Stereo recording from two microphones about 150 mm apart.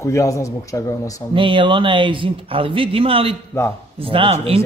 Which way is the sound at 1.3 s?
35° right (ahead or behind).